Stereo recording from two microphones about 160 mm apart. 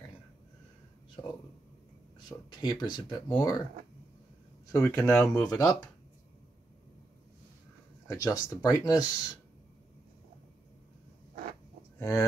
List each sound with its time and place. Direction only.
2.2 s speech: 25° left (ahead or behind)
4.7 s speech: 15° left (ahead or behind)
5.4 s speech: 25° left (ahead or behind)
8.1 s speech: 20° left (ahead or behind)
12.0 s speech: 20° left (ahead or behind)